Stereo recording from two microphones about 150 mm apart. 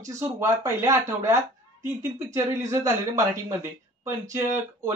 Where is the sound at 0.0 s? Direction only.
20° right (ahead or behind).